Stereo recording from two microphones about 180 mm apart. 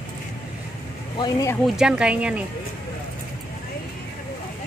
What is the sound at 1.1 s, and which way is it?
Speech, 25° left (ahead or behind).